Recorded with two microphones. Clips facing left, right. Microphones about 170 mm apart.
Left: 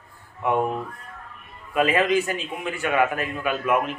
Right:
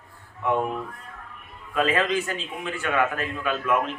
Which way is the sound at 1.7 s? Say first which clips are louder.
Left 3 dB; 15° left (ahead or behind).